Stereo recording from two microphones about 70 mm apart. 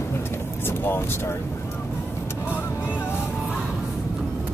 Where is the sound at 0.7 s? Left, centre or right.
Left.